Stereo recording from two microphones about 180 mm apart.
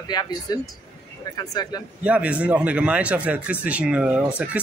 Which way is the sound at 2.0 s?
5° right (ahead or behind).